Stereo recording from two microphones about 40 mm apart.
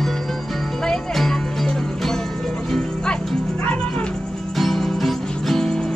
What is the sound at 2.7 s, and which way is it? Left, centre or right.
Music, centre.